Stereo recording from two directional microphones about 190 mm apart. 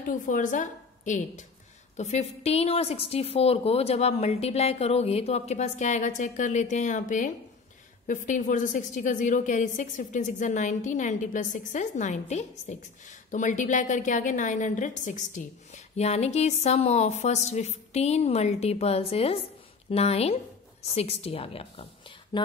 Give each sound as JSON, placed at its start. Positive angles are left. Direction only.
{"t": 0.0, "sound": "a woman's voice", "side_deg": 45}